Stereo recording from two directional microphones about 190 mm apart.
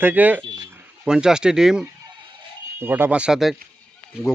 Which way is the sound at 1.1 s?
5° right (ahead or behind).